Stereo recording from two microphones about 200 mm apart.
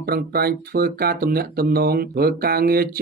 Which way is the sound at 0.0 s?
50° right (ahead or behind).